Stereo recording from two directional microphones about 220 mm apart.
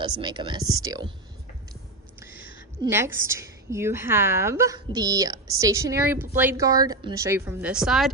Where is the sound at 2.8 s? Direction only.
10° right (ahead or behind).